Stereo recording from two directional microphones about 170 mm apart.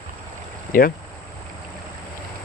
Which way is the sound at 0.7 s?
55° left (ahead or behind).